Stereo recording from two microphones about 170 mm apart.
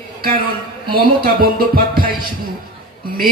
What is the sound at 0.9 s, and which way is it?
Speech, 60° right (ahead or behind).